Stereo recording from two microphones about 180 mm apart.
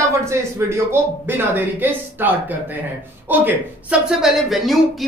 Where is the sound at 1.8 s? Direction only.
10° right (ahead or behind).